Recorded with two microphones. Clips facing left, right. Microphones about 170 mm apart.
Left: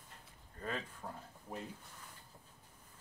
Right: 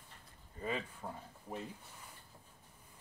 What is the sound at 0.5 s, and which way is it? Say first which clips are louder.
Speech: right 3 dB; 5° right (ahead or behind).